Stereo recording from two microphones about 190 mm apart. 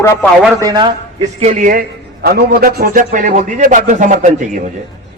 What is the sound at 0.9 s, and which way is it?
Speech, 35° right (ahead or behind).